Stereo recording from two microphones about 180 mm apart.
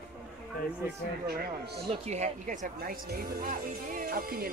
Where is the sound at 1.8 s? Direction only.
40° right (ahead or behind).